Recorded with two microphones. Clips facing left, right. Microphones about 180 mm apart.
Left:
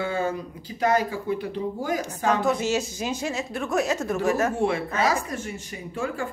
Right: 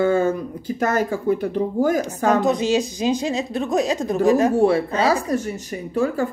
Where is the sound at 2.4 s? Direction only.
15° right (ahead or behind).